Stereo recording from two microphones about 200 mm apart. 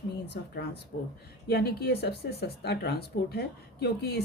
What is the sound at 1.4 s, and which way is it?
Speech, 55° left (ahead or behind).